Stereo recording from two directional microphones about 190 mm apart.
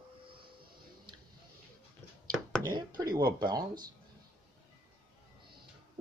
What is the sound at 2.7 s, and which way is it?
Speech, 20° right (ahead or behind).